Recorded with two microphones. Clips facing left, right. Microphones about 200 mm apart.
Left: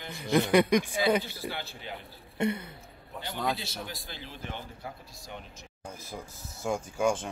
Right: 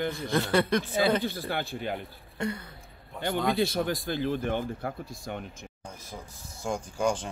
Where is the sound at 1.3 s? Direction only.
50° right (ahead or behind).